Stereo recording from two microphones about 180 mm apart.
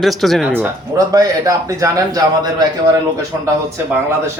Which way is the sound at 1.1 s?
20° right (ahead or behind).